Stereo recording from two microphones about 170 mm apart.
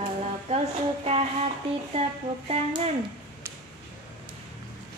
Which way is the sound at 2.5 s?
40° right (ahead or behind).